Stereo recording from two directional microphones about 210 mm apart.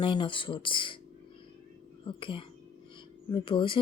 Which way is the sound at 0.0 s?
20° left (ahead or behind).